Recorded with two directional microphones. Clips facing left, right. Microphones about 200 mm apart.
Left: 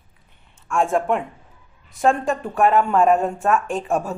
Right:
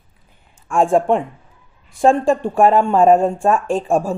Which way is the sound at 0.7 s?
30° right (ahead or behind).